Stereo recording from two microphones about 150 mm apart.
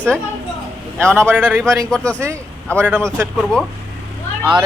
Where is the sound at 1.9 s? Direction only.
5° left (ahead or behind).